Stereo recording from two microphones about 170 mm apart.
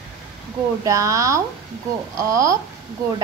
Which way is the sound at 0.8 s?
20° right (ahead or behind).